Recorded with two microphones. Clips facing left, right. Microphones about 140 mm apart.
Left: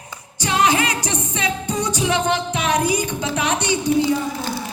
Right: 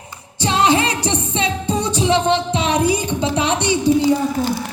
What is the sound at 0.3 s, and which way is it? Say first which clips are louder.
Music: right 3 dB; 30° right (ahead or behind).